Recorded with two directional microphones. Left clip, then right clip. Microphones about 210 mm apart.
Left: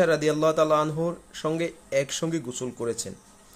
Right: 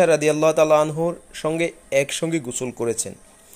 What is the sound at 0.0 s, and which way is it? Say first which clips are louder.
Speech: right 5 dB; 10° right (ahead or behind).